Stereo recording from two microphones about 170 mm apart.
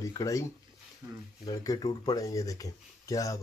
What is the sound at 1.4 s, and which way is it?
Speech, 25° left (ahead or behind).